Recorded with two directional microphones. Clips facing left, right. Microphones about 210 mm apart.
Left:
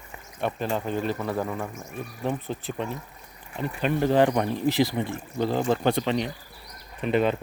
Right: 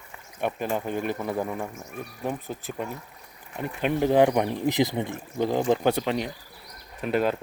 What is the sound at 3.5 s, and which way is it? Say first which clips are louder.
Speech: even; 15° right (ahead or behind).